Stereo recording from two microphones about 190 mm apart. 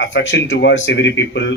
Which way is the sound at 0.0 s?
70° left (ahead or behind).